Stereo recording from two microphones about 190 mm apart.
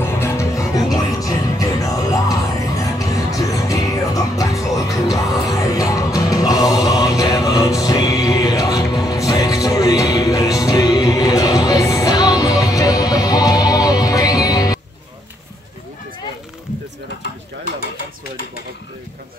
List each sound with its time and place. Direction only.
0.0 s music: 15° left (ahead or behind)